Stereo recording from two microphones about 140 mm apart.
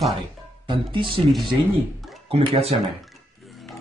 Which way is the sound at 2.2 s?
45° right (ahead or behind).